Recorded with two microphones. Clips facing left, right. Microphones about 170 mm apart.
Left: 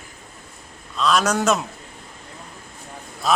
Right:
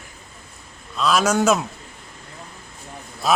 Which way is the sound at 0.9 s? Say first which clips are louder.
Right 1 dB; 5° right (ahead or behind).